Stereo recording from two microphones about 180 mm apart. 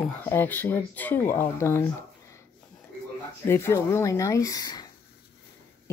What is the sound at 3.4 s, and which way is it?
Speech, 15° left (ahead or behind).